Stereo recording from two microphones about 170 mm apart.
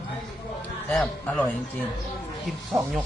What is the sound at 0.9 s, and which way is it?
Speech, centre (ahead or behind).